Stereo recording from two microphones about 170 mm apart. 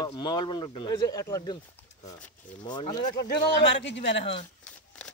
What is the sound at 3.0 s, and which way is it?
Speech, 60° left (ahead or behind).